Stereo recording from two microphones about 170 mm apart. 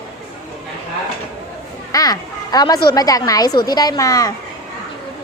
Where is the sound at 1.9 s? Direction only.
20° left (ahead or behind).